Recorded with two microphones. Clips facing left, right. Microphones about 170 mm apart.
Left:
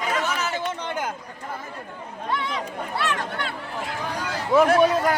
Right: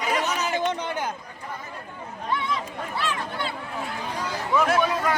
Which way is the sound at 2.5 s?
70° left (ahead or behind).